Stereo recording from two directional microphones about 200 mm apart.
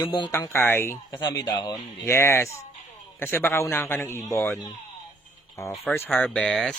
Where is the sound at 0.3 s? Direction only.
10° left (ahead or behind).